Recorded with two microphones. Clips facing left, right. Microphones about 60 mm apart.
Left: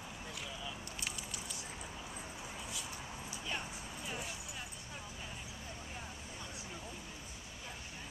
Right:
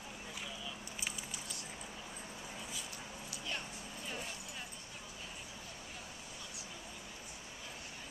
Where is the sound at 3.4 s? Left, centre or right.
Centre.